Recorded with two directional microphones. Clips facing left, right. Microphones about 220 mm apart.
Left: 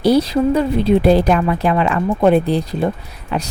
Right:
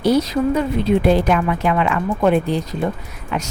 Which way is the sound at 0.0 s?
35° left (ahead or behind).